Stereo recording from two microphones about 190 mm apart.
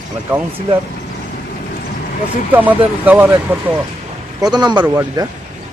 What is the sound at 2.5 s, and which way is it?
Speech, 10° right (ahead or behind).